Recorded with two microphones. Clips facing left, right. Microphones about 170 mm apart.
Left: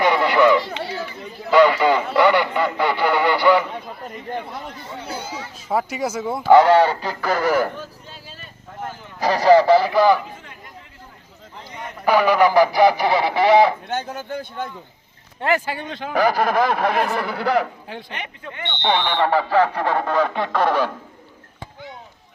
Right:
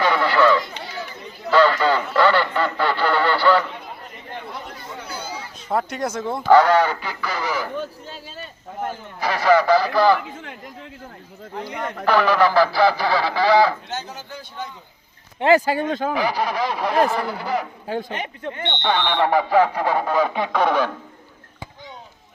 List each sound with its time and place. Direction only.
0.0 s chatter: 15° left (ahead or behind)
1.5 s radio: 15° left (ahead or behind)
4.9 s chatter: 25° left (ahead or behind)
5.5 s speech: 5° left (ahead or behind)
6.5 s speech: 25° left (ahead or behind); by 7.7 s 55° left (ahead or behind)
9.2 s speech: 35° left (ahead or behind); by 10.2 s 15° left (ahead or behind)
11.5 s speech: 65° right (ahead or behind)
12.0 s speech: 10° left (ahead or behind)
13.8 s a man's voice: 55° left (ahead or behind)
15.4 s speech: 25° right (ahead or behind)
15.6 s speech: 45° right (ahead or behind)
16.1 s speech: 45° left (ahead or behind); by 17.7 s 70° left (ahead or behind)
17.8 s speech: 40° right (ahead or behind)
19.2 s speech: 15° right (ahead or behind); by 20.9 s 5° left (ahead or behind)